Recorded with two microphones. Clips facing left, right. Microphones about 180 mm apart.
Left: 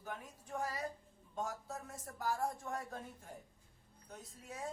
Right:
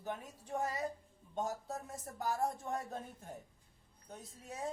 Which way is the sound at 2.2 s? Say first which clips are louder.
Right 2 dB; 25° right (ahead or behind).